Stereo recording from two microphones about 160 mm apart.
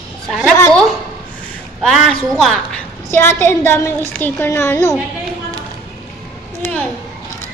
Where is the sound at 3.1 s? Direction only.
15° left (ahead or behind).